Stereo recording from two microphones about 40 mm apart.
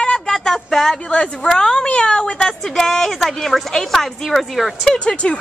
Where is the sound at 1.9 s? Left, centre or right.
Left.